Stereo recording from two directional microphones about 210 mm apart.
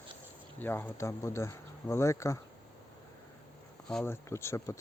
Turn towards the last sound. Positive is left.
turn(degrees=15)  # may be behind; listen again after turning